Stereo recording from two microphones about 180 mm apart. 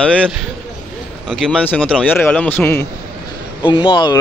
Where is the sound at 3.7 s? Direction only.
25° left (ahead or behind).